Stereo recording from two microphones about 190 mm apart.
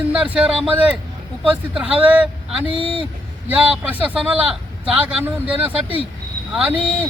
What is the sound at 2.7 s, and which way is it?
Speech, 30° right (ahead or behind).